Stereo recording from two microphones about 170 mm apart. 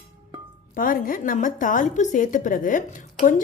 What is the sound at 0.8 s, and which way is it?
Speech, 55° left (ahead or behind).